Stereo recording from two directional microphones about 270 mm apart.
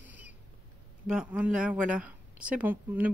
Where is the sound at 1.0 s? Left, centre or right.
Centre.